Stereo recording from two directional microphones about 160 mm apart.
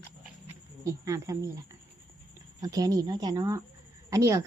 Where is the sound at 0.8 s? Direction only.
20° right (ahead or behind).